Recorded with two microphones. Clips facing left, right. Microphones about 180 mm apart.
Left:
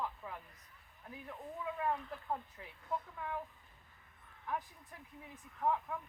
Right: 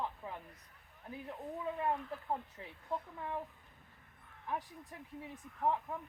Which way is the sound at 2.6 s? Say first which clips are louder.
Right 3 dB; 30° right (ahead or behind).